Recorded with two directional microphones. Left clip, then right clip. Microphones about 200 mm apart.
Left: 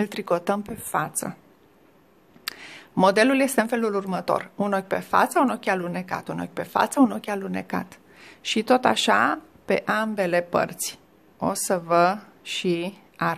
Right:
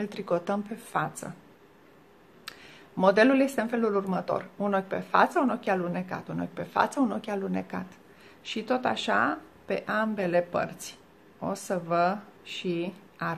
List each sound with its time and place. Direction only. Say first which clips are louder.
0.0 s a woman's voice: left 5 dB; 40° left (ahead or behind)
2.4 s speech: left 9 dB; 45° left (ahead or behind)